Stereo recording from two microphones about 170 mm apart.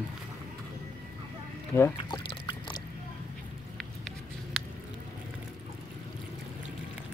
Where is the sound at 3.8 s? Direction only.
Centre (ahead or behind).